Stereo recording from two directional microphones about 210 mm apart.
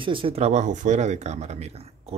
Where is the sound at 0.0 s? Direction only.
25° right (ahead or behind).